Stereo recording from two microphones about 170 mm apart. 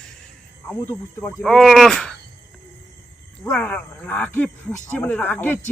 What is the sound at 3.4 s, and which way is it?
Speech, 5° left (ahead or behind).